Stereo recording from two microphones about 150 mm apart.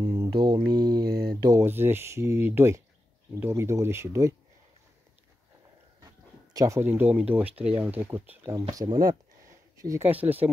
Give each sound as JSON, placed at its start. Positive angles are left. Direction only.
{"t": 0.0, "sound": "mantra", "side_deg": -35}
{"t": 0.7, "sound": "speech", "side_deg": -30}
{"t": 1.0, "sound": "speech", "side_deg": -90}
{"t": 1.4, "sound": "speech", "side_deg": -20}
{"t": 6.5, "sound": "speech", "side_deg": -20}
{"t": 8.5, "sound": "speech", "side_deg": -25}